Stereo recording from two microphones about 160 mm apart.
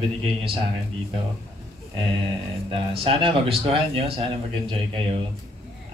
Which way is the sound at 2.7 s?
35° right (ahead or behind).